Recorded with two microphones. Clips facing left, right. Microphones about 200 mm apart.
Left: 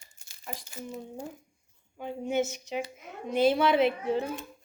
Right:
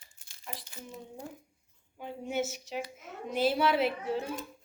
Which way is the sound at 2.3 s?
5° right (ahead or behind).